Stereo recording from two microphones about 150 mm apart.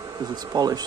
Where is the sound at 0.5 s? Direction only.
25° right (ahead or behind).